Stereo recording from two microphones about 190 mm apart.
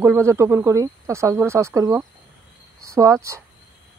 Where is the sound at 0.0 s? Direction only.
15° right (ahead or behind).